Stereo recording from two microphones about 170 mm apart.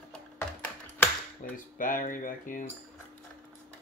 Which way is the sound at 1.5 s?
50° left (ahead or behind).